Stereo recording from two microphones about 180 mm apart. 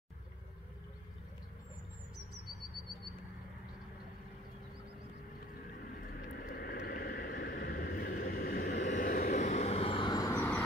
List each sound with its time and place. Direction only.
6.3 s vehicle: 55° left (ahead or behind); by 10.6 s 15° left (ahead or behind)